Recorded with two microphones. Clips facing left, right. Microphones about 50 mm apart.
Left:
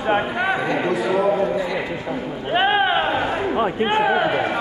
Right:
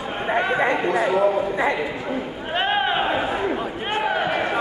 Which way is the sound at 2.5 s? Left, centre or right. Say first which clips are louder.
Left 3 dB; centre.